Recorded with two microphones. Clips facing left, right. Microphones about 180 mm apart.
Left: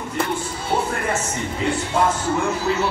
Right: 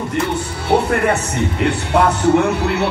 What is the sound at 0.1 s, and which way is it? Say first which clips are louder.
Speech: right 1 dB; 70° right (ahead or behind).